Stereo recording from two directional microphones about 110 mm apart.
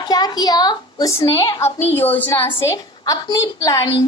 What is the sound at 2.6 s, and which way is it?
A woman's voice, 30° left (ahead or behind).